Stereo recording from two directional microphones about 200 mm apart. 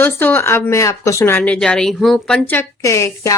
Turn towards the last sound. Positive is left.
turn(degrees=15)  # may be behind; listen again after turning